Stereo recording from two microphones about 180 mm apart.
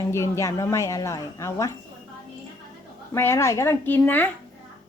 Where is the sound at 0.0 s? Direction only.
15° left (ahead or behind).